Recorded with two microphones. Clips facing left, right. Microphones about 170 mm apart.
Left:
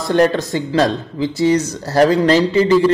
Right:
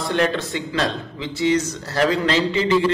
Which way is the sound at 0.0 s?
40° left (ahead or behind).